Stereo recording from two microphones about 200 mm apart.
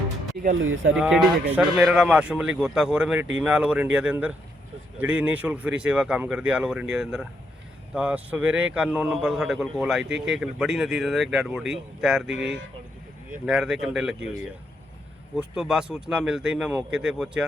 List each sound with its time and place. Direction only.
0.5 s speech: 80° right
0.9 s a man's voice: 5° right (ahead or behind)
13.4 s a man's voice: 5° right (ahead or behind)